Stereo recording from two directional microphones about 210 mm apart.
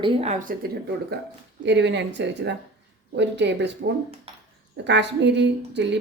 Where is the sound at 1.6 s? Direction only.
55° right (ahead or behind).